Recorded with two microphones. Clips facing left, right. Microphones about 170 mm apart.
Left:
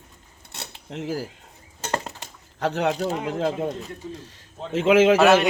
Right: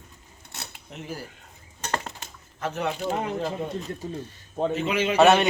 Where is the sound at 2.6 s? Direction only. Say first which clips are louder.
Left 5 dB; 85° left.